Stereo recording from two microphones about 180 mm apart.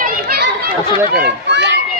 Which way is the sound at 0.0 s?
55° right (ahead or behind).